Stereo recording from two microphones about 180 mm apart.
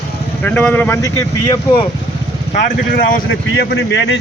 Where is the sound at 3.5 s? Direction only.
70° left (ahead or behind).